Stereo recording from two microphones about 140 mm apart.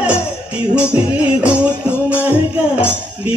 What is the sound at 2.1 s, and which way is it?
Music, 15° left (ahead or behind).